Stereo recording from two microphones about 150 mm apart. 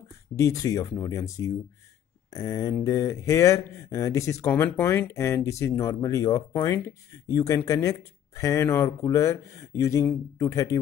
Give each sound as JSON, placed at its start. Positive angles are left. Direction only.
{"t": 0.4, "sound": "speech", "side_deg": 20}